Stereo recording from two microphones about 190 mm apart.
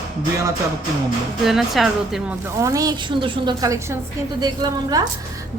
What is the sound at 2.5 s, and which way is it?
A woman's voice, 15° right (ahead or behind).